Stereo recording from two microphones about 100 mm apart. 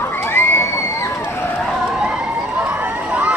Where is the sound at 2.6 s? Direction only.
15° right (ahead or behind).